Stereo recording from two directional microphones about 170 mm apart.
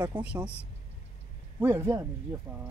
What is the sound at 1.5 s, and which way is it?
Speech, 15° right (ahead or behind).